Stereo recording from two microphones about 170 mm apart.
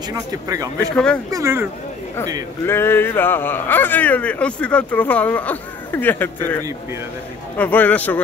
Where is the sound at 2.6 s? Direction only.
15° left (ahead or behind).